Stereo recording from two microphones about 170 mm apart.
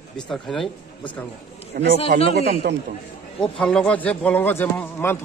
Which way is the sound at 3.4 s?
5° left (ahead or behind).